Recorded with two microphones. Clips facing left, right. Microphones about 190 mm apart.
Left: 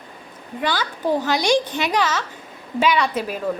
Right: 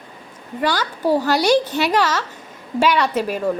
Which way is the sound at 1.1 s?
10° right (ahead or behind).